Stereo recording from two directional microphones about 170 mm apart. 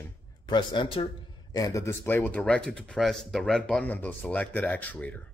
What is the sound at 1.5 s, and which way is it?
Speech, 20° left (ahead or behind).